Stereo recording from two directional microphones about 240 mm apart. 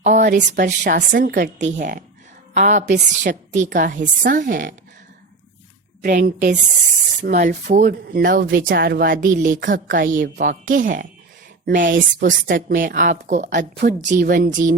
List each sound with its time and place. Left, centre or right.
0.0 s a sound: right
0.5 s a woman's voice: right
2.8 s a woman's voice: right
3.5 s a woman's voice: right
6.0 s a woman's voice: right